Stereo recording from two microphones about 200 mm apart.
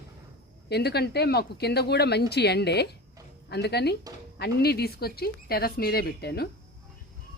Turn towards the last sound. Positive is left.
turn(degrees=55)  # may be behind; listen again after turning